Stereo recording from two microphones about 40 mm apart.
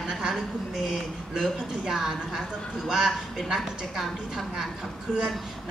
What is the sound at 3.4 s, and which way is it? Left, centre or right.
A woman's voice, centre.